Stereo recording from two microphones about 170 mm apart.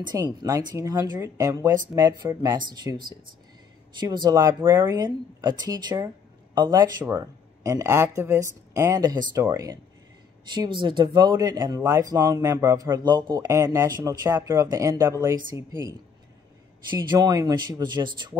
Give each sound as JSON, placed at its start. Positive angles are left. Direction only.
{"t": 0.1, "sound": "speech", "side_deg": -20}
{"t": 10.5, "sound": "speech", "side_deg": -25}
{"t": 17.1, "sound": "speech", "side_deg": -25}